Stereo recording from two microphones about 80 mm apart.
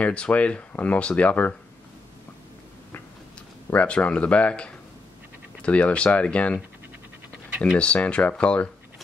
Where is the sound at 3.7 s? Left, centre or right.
Centre.